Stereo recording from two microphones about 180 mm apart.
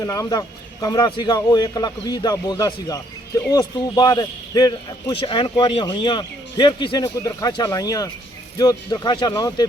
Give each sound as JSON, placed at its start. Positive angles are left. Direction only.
{"t": 0.0, "sound": "a man's voice", "side_deg": 20}